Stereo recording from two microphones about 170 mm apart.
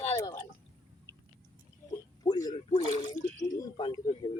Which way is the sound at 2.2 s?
25° left (ahead or behind).